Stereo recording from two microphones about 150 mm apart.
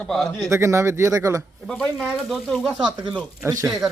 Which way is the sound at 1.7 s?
5° left (ahead or behind).